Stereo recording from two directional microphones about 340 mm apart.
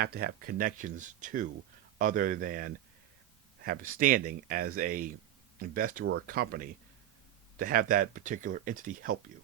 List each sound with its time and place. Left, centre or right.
0.0 s speech: right